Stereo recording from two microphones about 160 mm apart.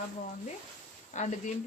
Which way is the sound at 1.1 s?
50° left (ahead or behind).